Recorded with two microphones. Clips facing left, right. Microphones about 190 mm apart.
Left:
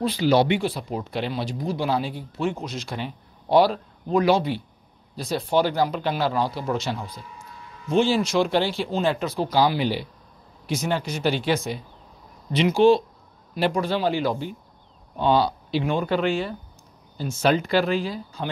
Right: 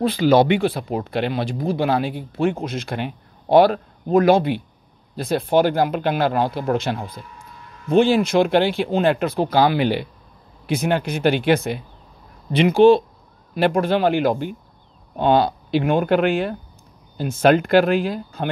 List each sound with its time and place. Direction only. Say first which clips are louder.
0.0 s speech: right 4 dB; 55° right (ahead or behind)